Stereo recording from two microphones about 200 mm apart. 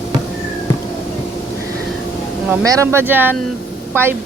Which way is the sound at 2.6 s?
15° right (ahead or behind).